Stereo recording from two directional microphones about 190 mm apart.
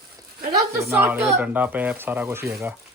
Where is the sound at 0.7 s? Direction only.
10° right (ahead or behind).